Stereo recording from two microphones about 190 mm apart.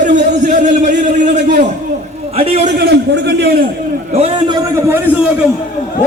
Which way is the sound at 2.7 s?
60° right (ahead or behind).